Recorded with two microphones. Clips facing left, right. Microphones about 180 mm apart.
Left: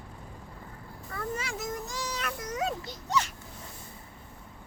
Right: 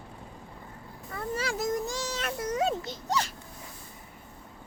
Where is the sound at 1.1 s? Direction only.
30° right (ahead or behind).